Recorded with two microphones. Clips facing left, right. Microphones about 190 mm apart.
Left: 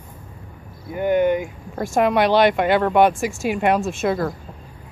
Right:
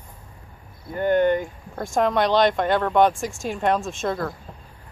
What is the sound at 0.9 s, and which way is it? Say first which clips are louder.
Speech: left 1 dB; 10° left (ahead or behind).